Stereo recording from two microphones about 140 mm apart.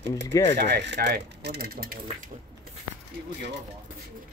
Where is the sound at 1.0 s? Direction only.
90° right.